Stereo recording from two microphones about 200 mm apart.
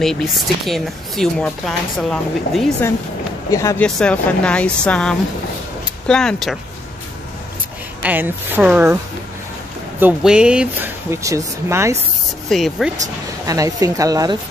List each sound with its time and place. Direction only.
0.0 s speech: centre (ahead or behind)
3.4 s speech: 15° left (ahead or behind)
8.0 s speech: 10° right (ahead or behind)
9.9 s speech: 5° right (ahead or behind)
12.4 s speech: centre (ahead or behind)
13.5 s speech: 15° right (ahead or behind)